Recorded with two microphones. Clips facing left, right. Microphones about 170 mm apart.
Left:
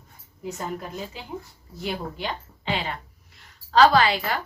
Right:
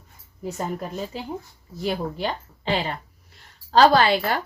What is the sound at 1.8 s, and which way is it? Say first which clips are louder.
Speech: right 4 dB; 35° right (ahead or behind).